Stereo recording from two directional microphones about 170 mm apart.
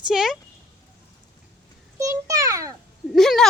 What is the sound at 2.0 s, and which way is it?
Speech, 20° right (ahead or behind).